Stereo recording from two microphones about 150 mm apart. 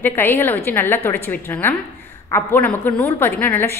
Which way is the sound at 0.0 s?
15° left (ahead or behind).